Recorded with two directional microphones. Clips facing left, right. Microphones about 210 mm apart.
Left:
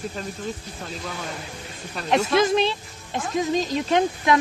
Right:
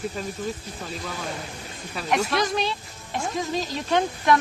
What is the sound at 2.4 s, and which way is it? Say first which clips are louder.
Speech: left 5 dB; 25° left (ahead or behind).